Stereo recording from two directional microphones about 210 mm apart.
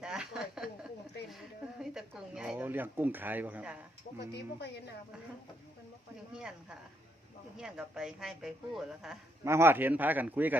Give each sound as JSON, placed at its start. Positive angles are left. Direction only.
{"t": 0.0, "sound": "a sound", "side_deg": -5}
{"t": 4.2, "sound": "speech", "side_deg": 55}
{"t": 6.3, "sound": "a woman's voice", "side_deg": -5}
{"t": 9.4, "sound": "speech", "side_deg": -10}